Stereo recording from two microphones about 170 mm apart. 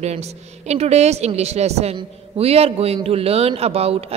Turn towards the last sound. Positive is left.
turn(degrees=-35)  # may be behind; listen again after turning